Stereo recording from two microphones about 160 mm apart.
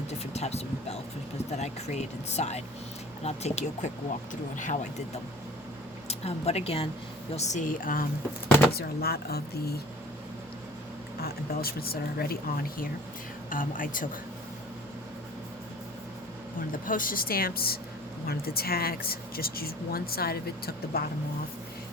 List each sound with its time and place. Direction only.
0.1 s speech: 45° left (ahead or behind); by 8.0 s 60° left (ahead or behind)
8.7 s speech: 75° left (ahead or behind)
11.2 s a woman's voice: 70° left (ahead or behind)
16.6 s a woman's voice: 60° left (ahead or behind)